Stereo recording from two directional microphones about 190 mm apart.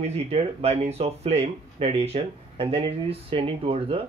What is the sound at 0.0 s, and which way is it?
Speech, 30° right (ahead or behind).